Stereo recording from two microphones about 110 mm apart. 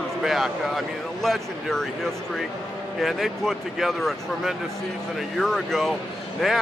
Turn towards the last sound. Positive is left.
turn(degrees=0)  # may be behind; listen again after turning